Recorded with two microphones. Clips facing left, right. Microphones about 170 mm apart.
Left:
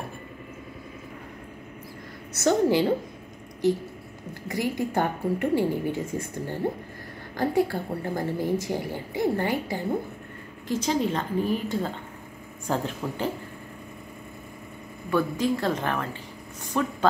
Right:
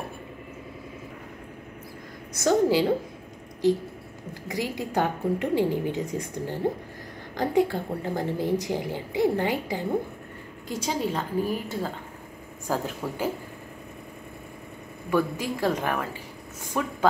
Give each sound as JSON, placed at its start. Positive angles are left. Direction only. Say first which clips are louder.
{"t": 2.3, "sound": "a woman's voice", "louder": "even", "side_deg": -10}
{"t": 4.5, "sound": "a woman's voice", "louder": "left 3 dB", "side_deg": -15}
{"t": 15.0, "sound": "a woman's voice", "louder": "left 1 dB", "side_deg": -10}